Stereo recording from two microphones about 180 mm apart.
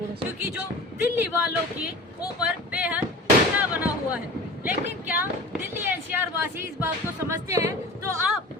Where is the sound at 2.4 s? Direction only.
10° right (ahead or behind).